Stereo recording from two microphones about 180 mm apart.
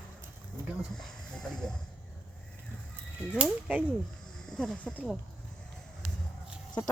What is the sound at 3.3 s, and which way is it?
Speech, 5° right (ahead or behind).